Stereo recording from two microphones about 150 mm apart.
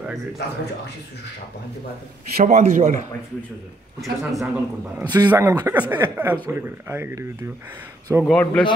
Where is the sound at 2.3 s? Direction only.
55° right (ahead or behind).